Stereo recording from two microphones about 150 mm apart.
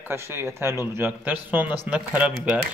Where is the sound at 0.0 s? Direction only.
15° right (ahead or behind).